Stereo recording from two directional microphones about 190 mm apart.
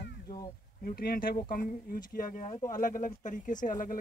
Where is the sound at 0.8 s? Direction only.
50° left (ahead or behind).